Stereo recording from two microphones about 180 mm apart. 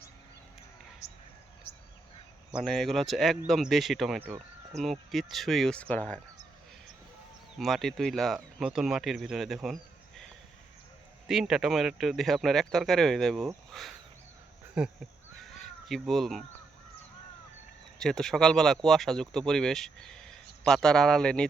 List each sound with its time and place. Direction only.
1.0 s a sound: 40° left (ahead or behind)
2.6 s speech: centre (ahead or behind)
7.6 s speech: centre (ahead or behind)
11.3 s speech: centre (ahead or behind)
15.4 s crow: centre (ahead or behind)
18.0 s speech: 5° left (ahead or behind)